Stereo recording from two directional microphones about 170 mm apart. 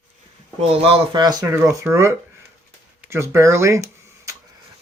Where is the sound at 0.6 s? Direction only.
35° right (ahead or behind); by 2.1 s 15° right (ahead or behind).